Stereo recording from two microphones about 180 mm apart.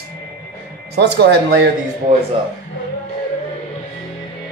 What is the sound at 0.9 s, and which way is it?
Speech, 65° right (ahead or behind).